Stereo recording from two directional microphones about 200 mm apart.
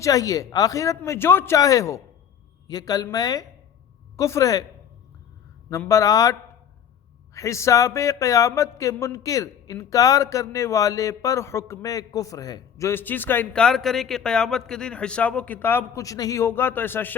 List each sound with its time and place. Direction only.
0.0 s speech: 15° left (ahead or behind)
5.7 s speech: 15° left (ahead or behind)
7.3 s speech: 15° left (ahead or behind)